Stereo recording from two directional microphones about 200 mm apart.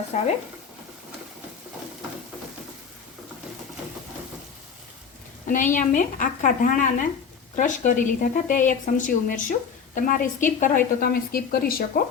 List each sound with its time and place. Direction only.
0.1 s speech: 35° left (ahead or behind)
5.5 s speech: 40° left (ahead or behind)